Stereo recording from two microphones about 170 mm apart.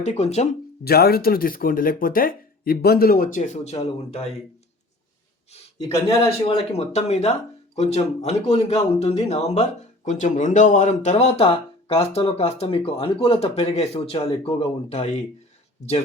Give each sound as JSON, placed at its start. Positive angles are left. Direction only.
{"t": 0.0, "sound": "speech", "side_deg": 40}
{"t": 0.9, "sound": "speech", "side_deg": 70}
{"t": 5.9, "sound": "a man's voice", "side_deg": 20}
{"t": 6.4, "sound": "speech", "side_deg": 40}